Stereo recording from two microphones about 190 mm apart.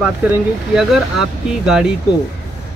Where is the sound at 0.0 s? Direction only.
5° right (ahead or behind).